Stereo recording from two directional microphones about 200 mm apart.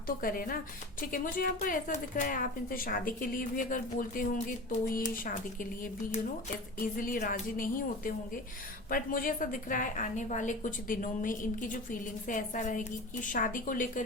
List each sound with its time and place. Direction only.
0.2 s a woman's voice: 45° left (ahead or behind)